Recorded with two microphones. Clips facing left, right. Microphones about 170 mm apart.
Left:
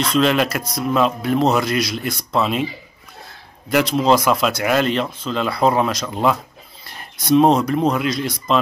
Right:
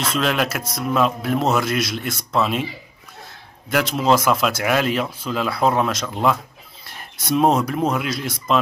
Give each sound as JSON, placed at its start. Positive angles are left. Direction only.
{"t": 0.1, "sound": "speech", "side_deg": 0}